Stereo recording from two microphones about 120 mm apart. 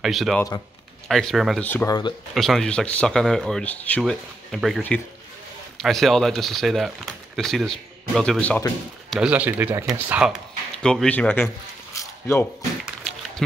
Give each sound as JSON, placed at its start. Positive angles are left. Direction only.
{"t": 0.0, "sound": "speech", "side_deg": 0}
{"t": 1.6, "sound": "speech", "side_deg": 15}
{"t": 1.9, "sound": "speech", "side_deg": 35}
{"t": 2.3, "sound": "speech", "side_deg": 0}
{"t": 4.0, "sound": "speech", "side_deg": 0}
{"t": 9.1, "sound": "speech", "side_deg": -10}
{"t": 10.8, "sound": "speech", "side_deg": 5}
{"t": 11.9, "sound": "mechanisms", "side_deg": 25}